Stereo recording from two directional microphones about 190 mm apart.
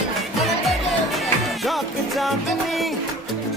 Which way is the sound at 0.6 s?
Centre (ahead or behind).